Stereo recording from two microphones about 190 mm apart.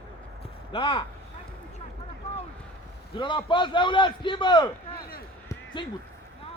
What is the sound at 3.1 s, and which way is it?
A man's voice, 25° left (ahead or behind).